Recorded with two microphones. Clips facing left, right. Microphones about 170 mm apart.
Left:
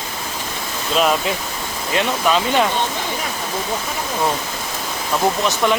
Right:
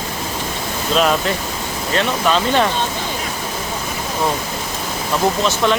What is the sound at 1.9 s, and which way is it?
Speech, 5° left (ahead or behind).